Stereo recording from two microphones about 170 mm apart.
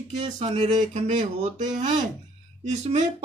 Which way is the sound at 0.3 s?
35° right (ahead or behind).